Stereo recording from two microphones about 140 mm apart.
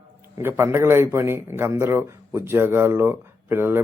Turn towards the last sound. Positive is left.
turn(degrees=-15)  # may be behind; listen again after turning